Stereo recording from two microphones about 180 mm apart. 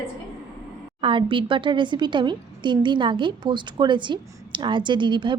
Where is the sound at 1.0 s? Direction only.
30° right (ahead or behind).